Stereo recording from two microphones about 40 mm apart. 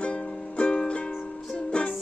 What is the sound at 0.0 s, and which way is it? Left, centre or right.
Music, left.